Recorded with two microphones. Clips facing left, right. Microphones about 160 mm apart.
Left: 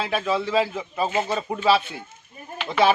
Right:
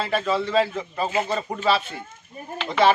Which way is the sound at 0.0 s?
Centre (ahead or behind).